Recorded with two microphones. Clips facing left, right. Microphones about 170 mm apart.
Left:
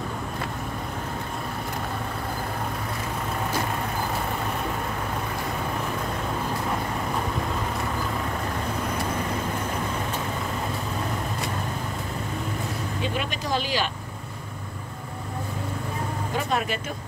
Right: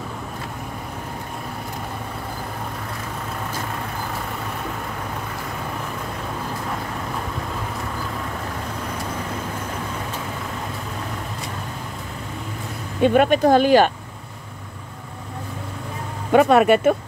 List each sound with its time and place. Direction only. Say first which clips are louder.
13.0 s speech: right 17 dB; 55° right (ahead or behind)
16.3 s speech: right 15 dB; 65° right (ahead or behind)